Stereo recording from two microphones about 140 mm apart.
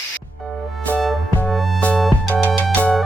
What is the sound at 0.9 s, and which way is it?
Music, 10° left (ahead or behind).